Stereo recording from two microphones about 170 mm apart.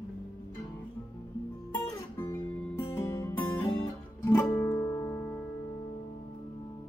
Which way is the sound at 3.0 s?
20° left (ahead or behind).